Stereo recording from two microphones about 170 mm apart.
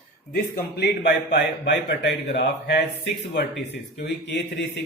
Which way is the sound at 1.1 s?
75° left (ahead or behind).